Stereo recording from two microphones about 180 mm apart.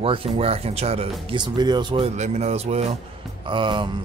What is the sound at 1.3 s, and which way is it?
Speech, 25° right (ahead or behind).